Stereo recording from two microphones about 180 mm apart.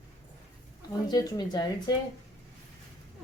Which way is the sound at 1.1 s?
20° left (ahead or behind).